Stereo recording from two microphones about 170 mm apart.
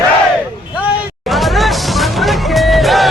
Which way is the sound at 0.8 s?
Centre (ahead or behind).